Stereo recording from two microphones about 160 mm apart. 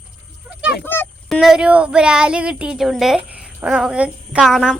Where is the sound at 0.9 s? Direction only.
15° left (ahead or behind).